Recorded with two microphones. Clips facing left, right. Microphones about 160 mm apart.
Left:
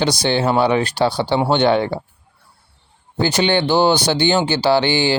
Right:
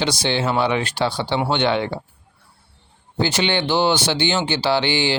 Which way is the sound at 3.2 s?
45° left (ahead or behind).